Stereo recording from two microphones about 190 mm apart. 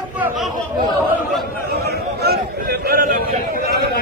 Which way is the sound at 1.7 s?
55° right (ahead or behind).